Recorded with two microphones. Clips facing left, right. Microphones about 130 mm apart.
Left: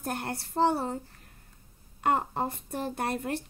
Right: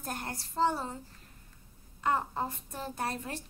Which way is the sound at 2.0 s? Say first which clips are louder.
Left 3 dB; 60° left (ahead or behind).